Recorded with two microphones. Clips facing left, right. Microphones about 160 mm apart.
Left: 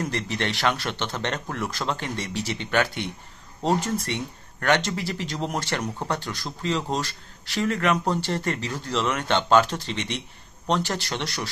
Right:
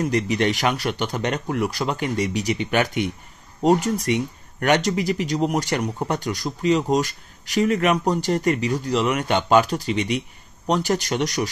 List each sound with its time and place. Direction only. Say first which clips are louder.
0.0 s speech: right 7 dB; 15° right (ahead or behind)